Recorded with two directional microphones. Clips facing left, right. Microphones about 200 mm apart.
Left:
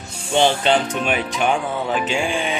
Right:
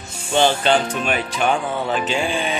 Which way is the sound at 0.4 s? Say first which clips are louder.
Even; 20° left (ahead or behind).